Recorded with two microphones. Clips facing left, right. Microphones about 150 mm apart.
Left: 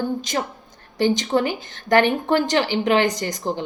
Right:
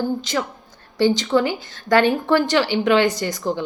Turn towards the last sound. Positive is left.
turn(degrees=20)  # may be behind; listen again after turning